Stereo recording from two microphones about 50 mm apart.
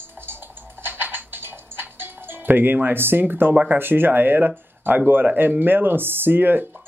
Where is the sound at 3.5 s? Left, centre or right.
Right.